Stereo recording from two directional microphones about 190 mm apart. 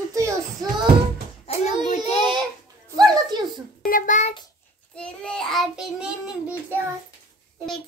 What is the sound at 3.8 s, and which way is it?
Speech, 45° left (ahead or behind).